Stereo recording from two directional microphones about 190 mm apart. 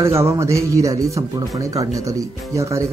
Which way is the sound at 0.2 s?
15° right (ahead or behind).